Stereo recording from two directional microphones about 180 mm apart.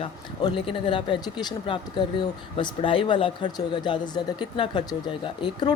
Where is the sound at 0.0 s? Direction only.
30° left (ahead or behind).